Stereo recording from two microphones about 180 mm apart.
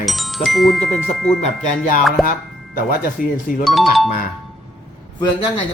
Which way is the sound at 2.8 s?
50° left (ahead or behind).